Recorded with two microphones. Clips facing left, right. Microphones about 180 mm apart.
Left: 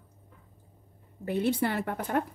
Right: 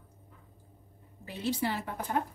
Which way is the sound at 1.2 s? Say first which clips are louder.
Left 5 dB; 55° left (ahead or behind).